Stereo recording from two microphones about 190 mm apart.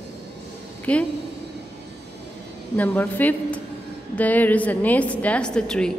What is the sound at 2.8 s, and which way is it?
A woman's voice, 10° left (ahead or behind).